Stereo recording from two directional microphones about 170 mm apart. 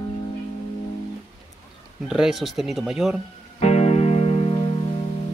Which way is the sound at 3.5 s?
40° left (ahead or behind).